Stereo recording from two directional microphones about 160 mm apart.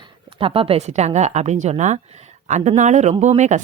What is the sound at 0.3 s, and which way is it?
A woman's voice, 35° right (ahead or behind).